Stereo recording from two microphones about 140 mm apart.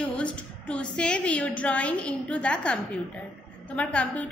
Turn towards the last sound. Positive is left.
turn(degrees=10)  # may be behind; listen again after turning